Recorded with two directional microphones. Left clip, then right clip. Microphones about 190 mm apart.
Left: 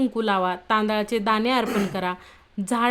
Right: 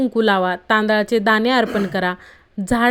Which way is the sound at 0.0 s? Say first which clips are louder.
Right 6 dB; 20° right (ahead or behind).